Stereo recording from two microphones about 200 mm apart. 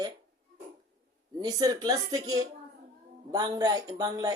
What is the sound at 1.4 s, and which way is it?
Speech, 20° right (ahead or behind).